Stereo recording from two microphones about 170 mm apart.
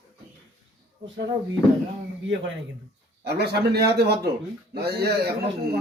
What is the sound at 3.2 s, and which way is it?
Speech, 75° right (ahead or behind).